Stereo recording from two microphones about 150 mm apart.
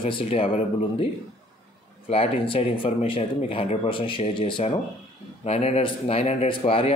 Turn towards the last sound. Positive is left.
turn(degrees=40)  # may be behind; listen again after turning